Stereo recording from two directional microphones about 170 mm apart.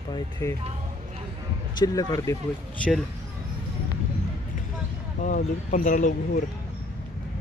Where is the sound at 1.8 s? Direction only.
20° left (ahead or behind).